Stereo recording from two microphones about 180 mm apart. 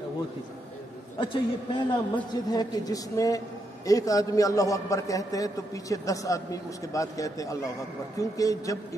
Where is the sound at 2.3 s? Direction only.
20° left (ahead or behind).